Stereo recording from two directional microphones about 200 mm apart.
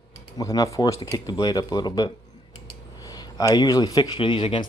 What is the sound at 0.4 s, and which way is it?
Speech, 20° left (ahead or behind).